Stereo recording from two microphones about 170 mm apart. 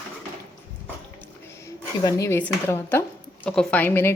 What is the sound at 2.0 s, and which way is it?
A woman's voice, 15° left (ahead or behind).